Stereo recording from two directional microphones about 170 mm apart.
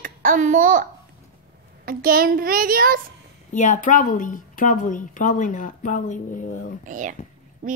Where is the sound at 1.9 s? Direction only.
60° right (ahead or behind).